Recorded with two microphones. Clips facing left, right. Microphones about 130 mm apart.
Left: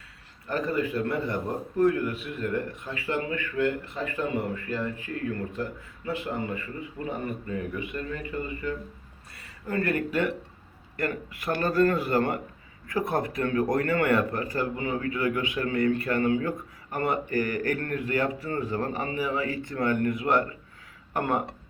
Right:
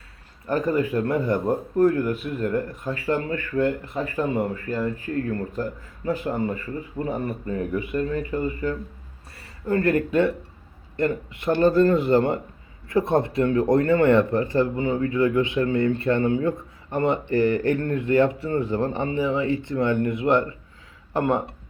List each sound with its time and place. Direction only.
0.4 s a man's voice: 45° right (ahead or behind)
6.9 s speech: 40° right (ahead or behind)